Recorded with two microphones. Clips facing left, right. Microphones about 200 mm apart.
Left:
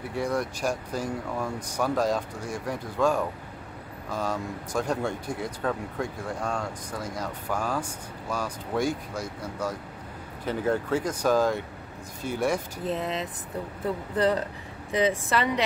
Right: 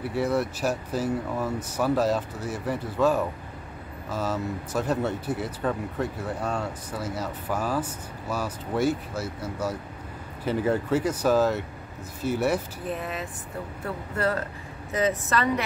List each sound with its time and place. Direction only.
0.1 s speech: 5° right (ahead or behind)
12.8 s a woman's voice: 20° left (ahead or behind)